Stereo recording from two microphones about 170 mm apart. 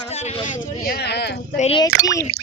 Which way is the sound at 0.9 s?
75° left (ahead or behind).